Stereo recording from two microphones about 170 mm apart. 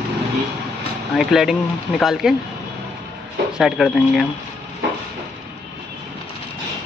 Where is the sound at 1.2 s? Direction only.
Centre (ahead or behind).